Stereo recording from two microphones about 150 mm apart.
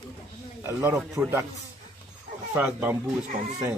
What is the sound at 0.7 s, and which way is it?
Speech, 20° right (ahead or behind).